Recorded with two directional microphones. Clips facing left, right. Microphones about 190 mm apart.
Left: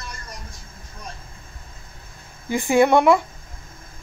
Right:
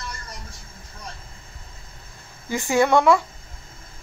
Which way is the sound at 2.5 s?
15° left (ahead or behind).